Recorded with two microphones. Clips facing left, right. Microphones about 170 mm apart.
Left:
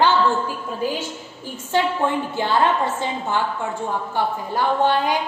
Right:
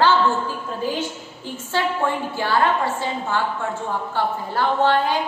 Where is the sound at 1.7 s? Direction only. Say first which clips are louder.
Left 2 dB; 20° left (ahead or behind).